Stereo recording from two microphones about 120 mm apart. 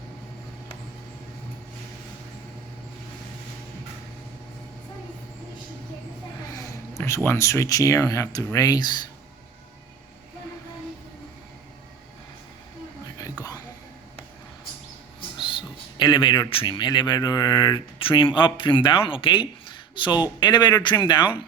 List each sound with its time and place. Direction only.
6.9 s a sound: 25° left (ahead or behind)
7.3 s speech: 25° left (ahead or behind)
16.0 s speech: 40° left (ahead or behind)